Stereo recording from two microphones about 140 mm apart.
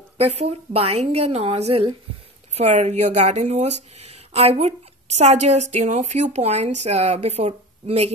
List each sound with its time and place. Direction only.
0.2 s speech: 50° right (ahead or behind)